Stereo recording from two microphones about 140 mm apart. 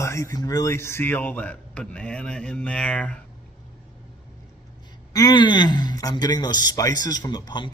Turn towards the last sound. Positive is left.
turn(degrees=30)  # may be behind; listen again after turning